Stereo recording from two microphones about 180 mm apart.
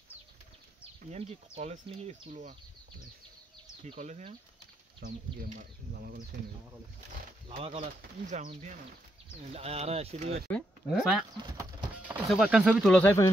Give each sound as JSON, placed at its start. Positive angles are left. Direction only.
{"t": 1.1, "sound": "speech", "side_deg": -35}
{"t": 3.8, "sound": "speech", "side_deg": -40}
{"t": 5.5, "sound": "speech", "side_deg": -50}
{"t": 7.6, "sound": "speech", "side_deg": -35}
{"t": 10.5, "sound": "speech", "side_deg": 0}
{"t": 11.5, "sound": "clip-clop", "side_deg": -10}
{"t": 12.3, "sound": "speech", "side_deg": -5}
{"t": 12.9, "sound": "speech", "side_deg": 10}